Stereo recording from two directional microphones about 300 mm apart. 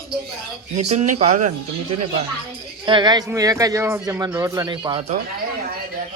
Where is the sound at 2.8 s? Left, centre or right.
Centre.